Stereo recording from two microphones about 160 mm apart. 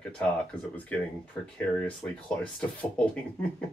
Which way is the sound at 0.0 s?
5° left (ahead or behind).